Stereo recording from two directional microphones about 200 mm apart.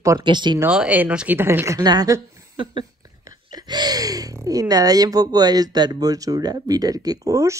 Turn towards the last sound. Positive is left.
turn(degrees=-15)  # may be behind; listen again after turning